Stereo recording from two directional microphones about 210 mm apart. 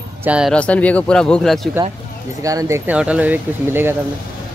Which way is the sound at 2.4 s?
15° right (ahead or behind).